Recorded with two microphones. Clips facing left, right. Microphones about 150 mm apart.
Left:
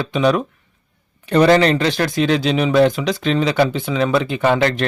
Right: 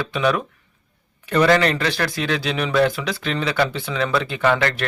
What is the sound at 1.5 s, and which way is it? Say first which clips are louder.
Speech: left 4 dB; 25° left (ahead or behind).